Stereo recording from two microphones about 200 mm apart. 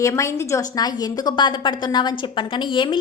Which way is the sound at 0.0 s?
15° left (ahead or behind).